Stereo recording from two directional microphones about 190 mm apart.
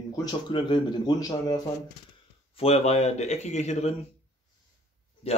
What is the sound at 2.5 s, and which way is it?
A man's voice, 30° left (ahead or behind).